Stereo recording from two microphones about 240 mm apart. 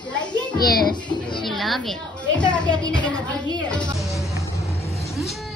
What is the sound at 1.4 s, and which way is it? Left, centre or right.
Speech, centre.